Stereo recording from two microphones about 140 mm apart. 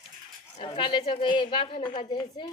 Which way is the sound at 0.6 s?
35° left (ahead or behind).